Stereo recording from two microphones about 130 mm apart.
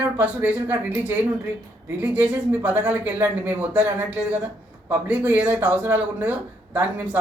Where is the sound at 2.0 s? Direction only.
15° right (ahead or behind).